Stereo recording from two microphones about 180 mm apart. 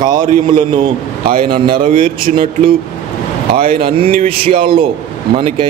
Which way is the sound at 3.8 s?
30° right (ahead or behind).